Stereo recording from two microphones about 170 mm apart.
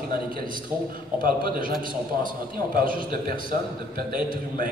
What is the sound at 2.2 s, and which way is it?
A man's voice, 55° right (ahead or behind).